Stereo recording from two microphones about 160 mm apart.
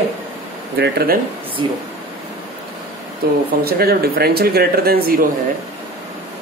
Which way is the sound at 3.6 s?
75° right (ahead or behind).